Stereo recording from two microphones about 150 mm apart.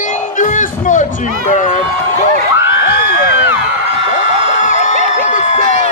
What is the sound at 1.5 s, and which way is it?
Run, 55° left (ahead or behind).